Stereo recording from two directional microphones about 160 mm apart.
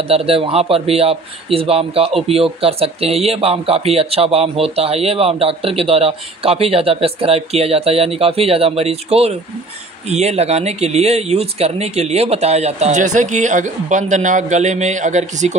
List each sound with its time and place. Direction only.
0.1 s speech: 40° right (ahead or behind)